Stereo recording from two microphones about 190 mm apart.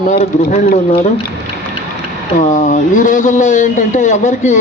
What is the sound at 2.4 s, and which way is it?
A man's voice, 40° left (ahead or behind).